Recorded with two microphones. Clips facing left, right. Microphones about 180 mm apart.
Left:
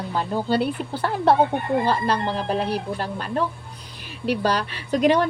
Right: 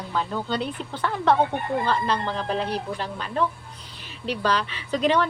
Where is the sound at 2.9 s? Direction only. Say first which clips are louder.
Left 2 dB; 45° left (ahead or behind).